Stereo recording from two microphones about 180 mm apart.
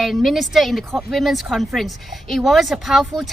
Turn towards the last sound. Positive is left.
turn(degrees=0)  # may be behind; listen again after turning